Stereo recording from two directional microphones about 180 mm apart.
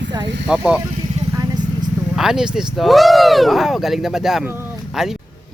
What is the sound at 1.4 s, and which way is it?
Vehicle, 20° right (ahead or behind).